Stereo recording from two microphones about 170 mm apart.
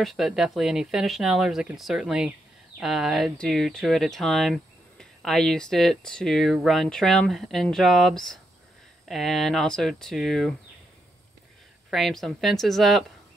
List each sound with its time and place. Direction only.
0.0 s speech: centre (ahead or behind)
11.9 s speech: centre (ahead or behind)